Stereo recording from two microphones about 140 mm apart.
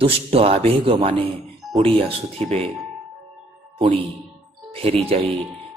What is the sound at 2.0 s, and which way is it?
Speech, 45° right (ahead or behind).